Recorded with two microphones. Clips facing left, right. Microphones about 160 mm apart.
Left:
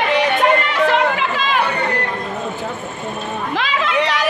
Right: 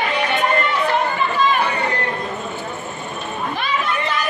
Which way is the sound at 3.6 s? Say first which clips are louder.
Left 5 dB; 90° left.